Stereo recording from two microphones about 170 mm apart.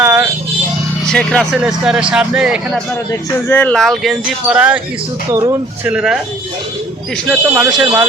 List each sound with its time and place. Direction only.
0.0 s a sound: 10° right (ahead or behind)
1.1 s speech: 5° left (ahead or behind)
3.1 s speech: 10° left (ahead or behind); by 4.8 s 10° right (ahead or behind)
5.3 s speech: 20° right (ahead or behind)
5.8 s speech: 5° right (ahead or behind)
7.3 s speech: 5° right (ahead or behind)